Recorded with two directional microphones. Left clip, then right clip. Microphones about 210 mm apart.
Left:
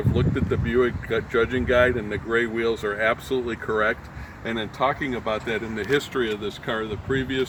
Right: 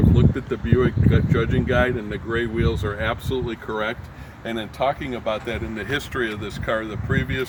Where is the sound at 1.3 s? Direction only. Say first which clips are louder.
Left 5 dB; 50° right (ahead or behind).